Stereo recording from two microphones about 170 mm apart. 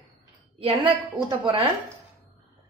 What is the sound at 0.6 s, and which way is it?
Speech, 30° right (ahead or behind).